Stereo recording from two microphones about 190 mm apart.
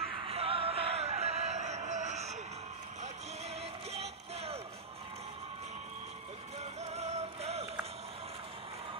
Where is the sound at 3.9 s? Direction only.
30° right (ahead or behind).